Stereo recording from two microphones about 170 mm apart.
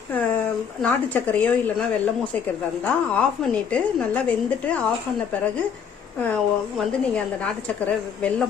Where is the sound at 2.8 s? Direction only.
10° left (ahead or behind).